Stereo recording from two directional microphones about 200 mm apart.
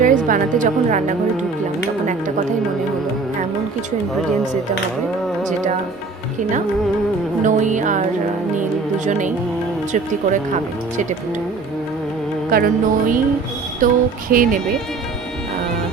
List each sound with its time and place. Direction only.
0.0 s a woman's voice: 40° right (ahead or behind)
5.4 s carnatic music: 40° right (ahead or behind)
7.4 s music: 40° right (ahead or behind)
9.0 s music: 40° right (ahead or behind)
12.5 s speech: 45° right (ahead or behind)